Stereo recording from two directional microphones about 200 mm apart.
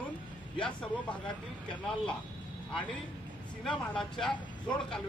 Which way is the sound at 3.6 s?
5° left (ahead or behind).